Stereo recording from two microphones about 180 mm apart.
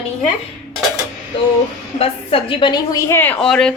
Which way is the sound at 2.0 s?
30° left (ahead or behind).